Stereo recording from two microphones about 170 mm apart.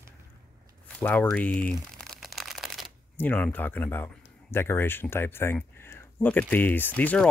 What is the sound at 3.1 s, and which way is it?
Speech, 10° left (ahead or behind).